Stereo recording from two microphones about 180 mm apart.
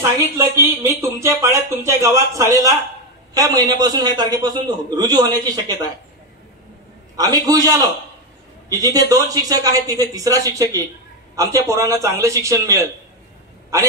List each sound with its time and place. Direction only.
0.4 s a man's voice: 15° right (ahead or behind)
7.2 s a man's voice: 20° right (ahead or behind)